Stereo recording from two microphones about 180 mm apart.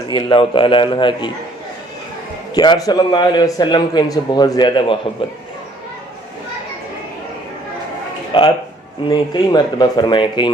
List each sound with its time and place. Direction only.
0.1 s a man's voice: 30° left (ahead or behind)
2.6 s a man's voice: 20° left (ahead or behind)
8.3 s a man's voice: 25° left (ahead or behind)